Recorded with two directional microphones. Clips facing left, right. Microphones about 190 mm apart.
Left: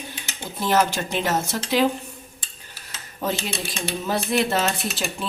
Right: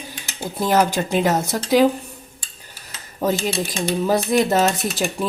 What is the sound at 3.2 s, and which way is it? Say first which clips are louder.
Speech: right 6 dB; 40° right (ahead or behind).